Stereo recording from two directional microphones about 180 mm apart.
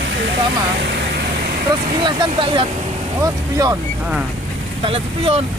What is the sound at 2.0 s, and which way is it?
Speech, 25° right (ahead or behind).